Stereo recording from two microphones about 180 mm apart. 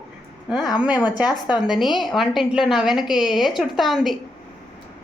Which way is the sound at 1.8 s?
Centre (ahead or behind).